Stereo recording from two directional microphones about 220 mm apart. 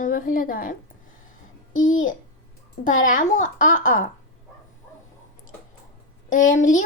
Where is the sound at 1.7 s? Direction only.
65° left (ahead or behind).